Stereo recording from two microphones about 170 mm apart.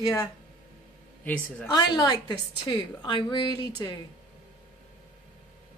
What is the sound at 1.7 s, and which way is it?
A woman's voice, 25° left (ahead or behind).